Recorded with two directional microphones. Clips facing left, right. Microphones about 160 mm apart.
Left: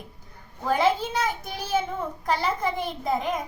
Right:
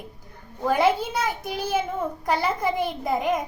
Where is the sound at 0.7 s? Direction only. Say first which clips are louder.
Right 2 dB; 10° right (ahead or behind).